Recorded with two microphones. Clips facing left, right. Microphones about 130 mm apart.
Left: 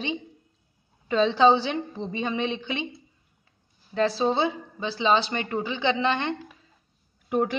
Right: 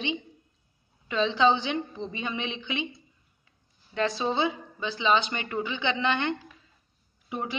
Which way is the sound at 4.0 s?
35° left (ahead or behind).